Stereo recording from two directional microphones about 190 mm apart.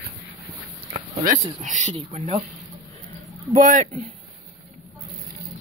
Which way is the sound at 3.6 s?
40° right (ahead or behind).